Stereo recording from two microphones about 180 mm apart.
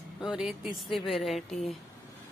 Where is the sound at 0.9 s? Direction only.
Centre (ahead or behind).